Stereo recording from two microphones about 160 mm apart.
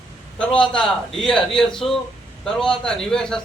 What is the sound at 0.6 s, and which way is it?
A man's voice, 5° left (ahead or behind).